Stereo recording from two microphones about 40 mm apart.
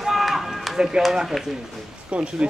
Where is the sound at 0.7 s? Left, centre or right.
Centre.